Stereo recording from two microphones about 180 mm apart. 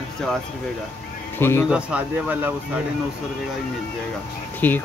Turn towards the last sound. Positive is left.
turn(degrees=10)  # may be behind; listen again after turning